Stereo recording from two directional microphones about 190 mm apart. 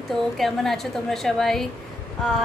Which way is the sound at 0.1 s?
Centre (ahead or behind).